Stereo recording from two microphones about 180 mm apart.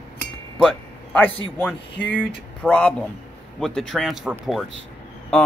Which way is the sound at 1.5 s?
10° left (ahead or behind).